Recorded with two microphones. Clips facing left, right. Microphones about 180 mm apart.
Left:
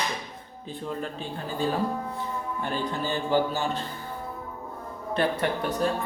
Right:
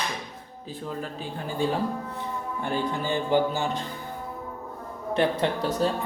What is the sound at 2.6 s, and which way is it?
Speech, 15° right (ahead or behind).